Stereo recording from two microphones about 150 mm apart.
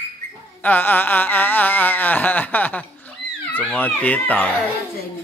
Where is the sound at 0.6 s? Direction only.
10° left (ahead or behind).